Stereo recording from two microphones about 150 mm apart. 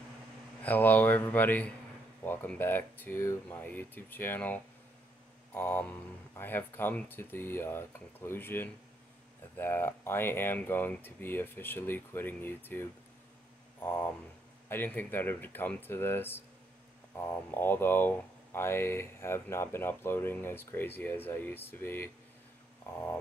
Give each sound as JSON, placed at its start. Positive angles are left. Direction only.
{"t": 0.6, "sound": "speech", "side_deg": 10}
{"t": 13.8, "sound": "speech", "side_deg": 15}